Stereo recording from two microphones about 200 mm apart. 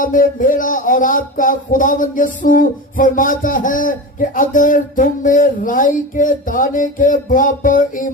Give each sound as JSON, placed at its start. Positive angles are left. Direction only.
{"t": 0.0, "sound": "speech", "side_deg": 40}